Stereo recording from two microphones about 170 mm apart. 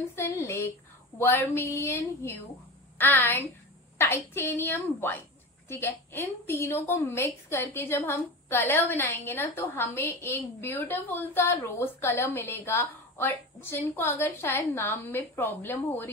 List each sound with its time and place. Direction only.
0.1 s a woman's voice: 15° left (ahead or behind)